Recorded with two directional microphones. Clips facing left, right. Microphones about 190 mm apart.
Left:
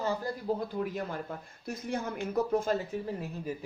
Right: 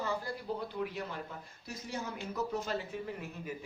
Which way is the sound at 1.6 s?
55° left (ahead or behind).